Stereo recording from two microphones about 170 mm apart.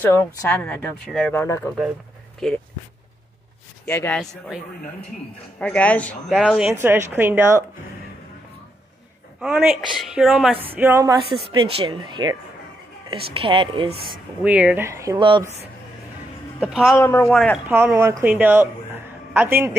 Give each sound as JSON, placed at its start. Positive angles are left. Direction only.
{"t": 0.0, "sound": "speech", "side_deg": 15}
{"t": 2.4, "sound": "a woman's voice", "side_deg": 0}
{"t": 3.8, "sound": "speech", "side_deg": 10}
{"t": 4.2, "sound": "a woman's voice", "side_deg": -5}
{"t": 5.6, "sound": "a woman's voice", "side_deg": 5}
{"t": 9.4, "sound": "a woman's voice", "side_deg": -5}
{"t": 11.5, "sound": "speech", "side_deg": -30}
{"t": 14.0, "sound": "speech", "side_deg": -10}
{"t": 16.5, "sound": "a man's voice", "side_deg": -5}
{"t": 16.9, "sound": "speech", "side_deg": 15}
{"t": 17.3, "sound": "a woman's voice", "side_deg": 5}
{"t": 17.6, "sound": "a man's voice", "side_deg": -10}